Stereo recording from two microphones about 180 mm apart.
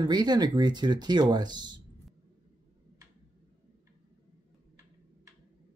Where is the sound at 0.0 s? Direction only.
25° right (ahead or behind).